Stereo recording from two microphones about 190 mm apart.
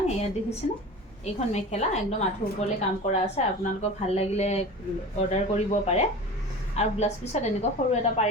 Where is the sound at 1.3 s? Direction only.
35° left (ahead or behind).